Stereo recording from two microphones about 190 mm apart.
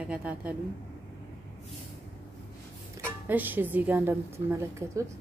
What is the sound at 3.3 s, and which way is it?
A woman's voice, 10° right (ahead or behind).